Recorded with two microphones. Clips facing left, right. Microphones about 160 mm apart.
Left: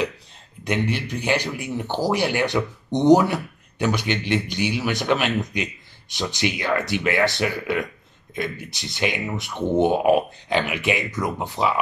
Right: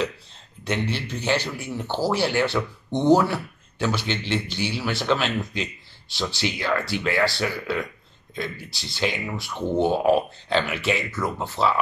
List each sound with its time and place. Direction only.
0.7 s speech: 15° left (ahead or behind)